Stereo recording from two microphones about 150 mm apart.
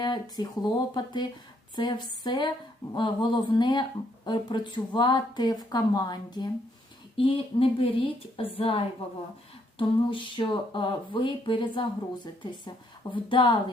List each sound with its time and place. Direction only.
0.0 s speech: 30° left (ahead or behind)